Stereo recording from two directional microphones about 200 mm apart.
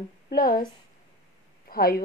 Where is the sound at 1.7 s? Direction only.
50° left (ahead or behind).